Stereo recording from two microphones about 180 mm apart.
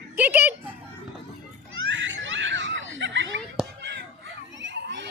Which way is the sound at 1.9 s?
90° right.